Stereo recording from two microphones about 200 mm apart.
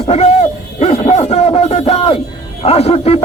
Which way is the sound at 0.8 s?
30° left (ahead or behind).